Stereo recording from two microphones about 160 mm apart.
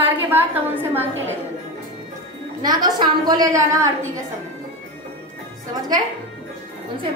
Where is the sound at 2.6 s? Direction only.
25° right (ahead or behind).